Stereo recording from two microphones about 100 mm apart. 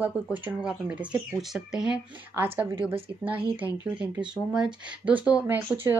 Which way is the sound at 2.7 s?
60° right (ahead or behind).